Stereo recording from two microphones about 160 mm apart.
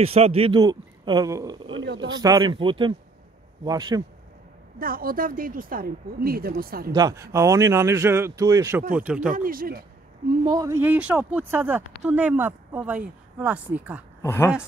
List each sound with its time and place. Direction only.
0.0 s a man's voice: 40° right (ahead or behind)
0.6 s a man's voice: 25° right (ahead or behind)
4.7 s speech: 65° right (ahead or behind)
6.9 s a man's voice: 25° right (ahead or behind)
8.9 s speech: 10° right (ahead or behind)
9.3 s speech: 60° right (ahead or behind)
10.4 s speech: 25° right (ahead or behind)
14.2 s speech: 15° left (ahead or behind)